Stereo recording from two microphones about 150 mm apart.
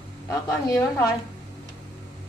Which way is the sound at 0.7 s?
20° left (ahead or behind).